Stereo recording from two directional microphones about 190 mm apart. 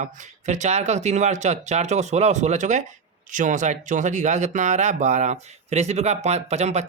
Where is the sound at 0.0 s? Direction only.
40° right (ahead or behind).